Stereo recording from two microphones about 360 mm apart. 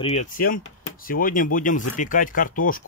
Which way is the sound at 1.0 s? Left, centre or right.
Left.